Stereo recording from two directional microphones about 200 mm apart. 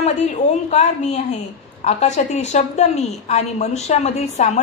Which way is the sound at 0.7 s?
35° left (ahead or behind).